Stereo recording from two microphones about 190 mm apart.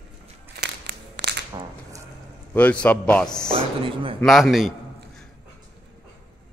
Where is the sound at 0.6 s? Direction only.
65° right (ahead or behind).